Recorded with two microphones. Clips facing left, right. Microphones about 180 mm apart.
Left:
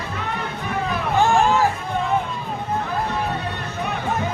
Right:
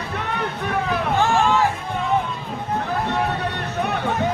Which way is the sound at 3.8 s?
65° right (ahead or behind).